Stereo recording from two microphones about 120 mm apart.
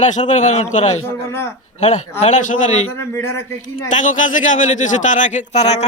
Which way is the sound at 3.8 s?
90° left.